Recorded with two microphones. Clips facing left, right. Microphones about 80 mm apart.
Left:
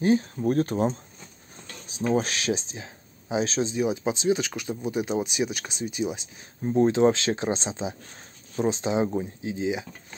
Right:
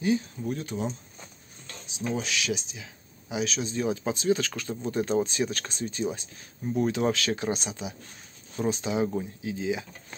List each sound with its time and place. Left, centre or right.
0.0 s speech: left
3.7 s speech: centre
6.6 s speech: left